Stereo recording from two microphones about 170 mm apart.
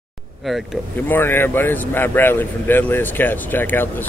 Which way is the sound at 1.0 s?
10° left (ahead or behind).